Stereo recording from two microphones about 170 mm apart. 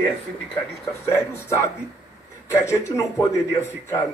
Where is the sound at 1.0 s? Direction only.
15° left (ahead or behind).